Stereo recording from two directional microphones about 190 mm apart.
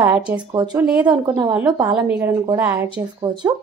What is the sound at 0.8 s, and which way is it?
A woman's voice, 5° right (ahead or behind).